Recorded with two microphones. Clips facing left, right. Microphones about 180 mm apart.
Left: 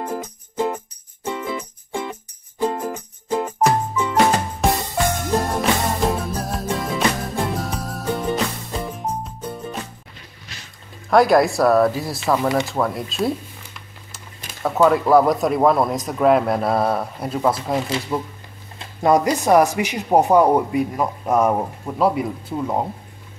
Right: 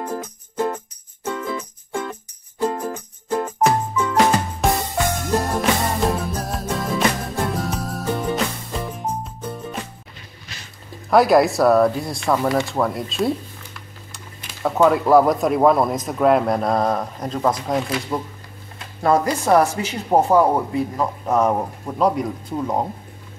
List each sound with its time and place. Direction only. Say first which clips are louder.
0.0 s music: even; 10° left (ahead or behind)
4.6 s music: left 1 dB; centre (ahead or behind)
11.1 s speech: even; centre (ahead or behind)
12.4 s speech: even; 15° left (ahead or behind)
12.6 s speech: right 1 dB; centre (ahead or behind)
14.6 s speech: even; centre (ahead or behind)
19.0 s speech: left 1 dB; 15° left (ahead or behind)